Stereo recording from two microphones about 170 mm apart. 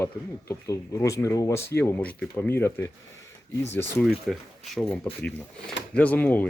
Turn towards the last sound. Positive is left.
turn(degrees=10)  # may be behind; listen again after turning